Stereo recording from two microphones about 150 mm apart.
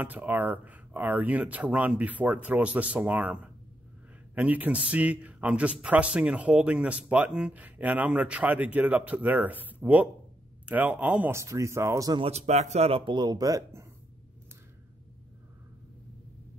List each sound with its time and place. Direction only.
0.0 s speech: 10° right (ahead or behind)
12.2 s speech: 45° right (ahead or behind); by 13.8 s 25° right (ahead or behind)